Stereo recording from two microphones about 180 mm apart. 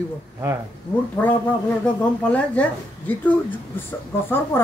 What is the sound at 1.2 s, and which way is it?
Speech, 5° left (ahead or behind).